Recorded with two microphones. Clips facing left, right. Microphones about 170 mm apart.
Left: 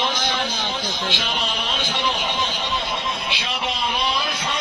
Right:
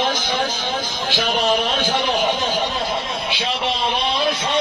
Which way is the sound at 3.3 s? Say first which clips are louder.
Right 4 dB; 30° right (ahead or behind).